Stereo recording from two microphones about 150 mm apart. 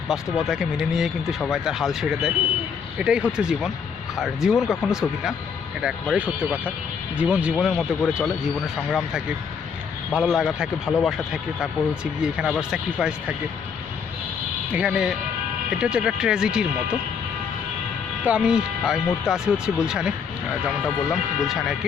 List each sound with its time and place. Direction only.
0.1 s speech: 5° right (ahead or behind)
14.7 s speech: 5° right (ahead or behind)
18.2 s speech: 10° right (ahead or behind)